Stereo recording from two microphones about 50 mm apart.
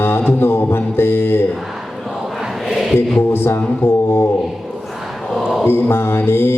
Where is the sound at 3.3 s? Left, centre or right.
Left.